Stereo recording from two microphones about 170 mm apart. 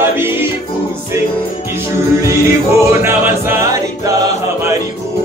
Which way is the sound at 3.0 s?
15° right (ahead or behind).